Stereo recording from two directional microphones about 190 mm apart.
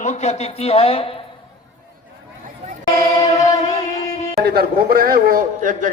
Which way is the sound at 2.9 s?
15° left (ahead or behind).